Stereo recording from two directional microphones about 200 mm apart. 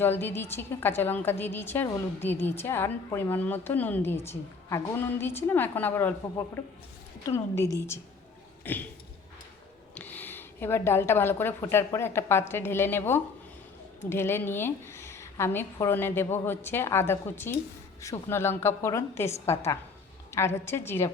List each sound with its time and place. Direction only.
0.0 s a woman's voice: 10° left (ahead or behind)
9.9 s a woman's voice: 10° left (ahead or behind)